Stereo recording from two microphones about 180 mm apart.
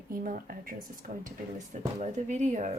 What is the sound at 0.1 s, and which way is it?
Speech, 50° right (ahead or behind).